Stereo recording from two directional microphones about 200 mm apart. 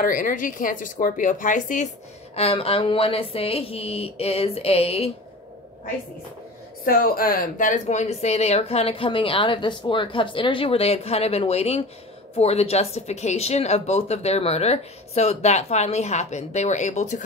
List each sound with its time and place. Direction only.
0.0 s speech: 40° left (ahead or behind)
2.3 s speech: 30° left (ahead or behind)
6.8 s speech: 45° left (ahead or behind)